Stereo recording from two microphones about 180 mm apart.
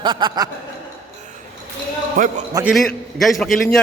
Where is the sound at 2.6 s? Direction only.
Centre (ahead or behind).